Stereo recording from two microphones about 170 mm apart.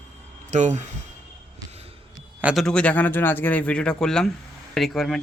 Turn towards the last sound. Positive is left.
turn(degrees=0)  # may be behind; listen again after turning